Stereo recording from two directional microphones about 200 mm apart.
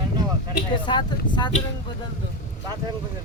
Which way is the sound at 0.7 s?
25° left (ahead or behind).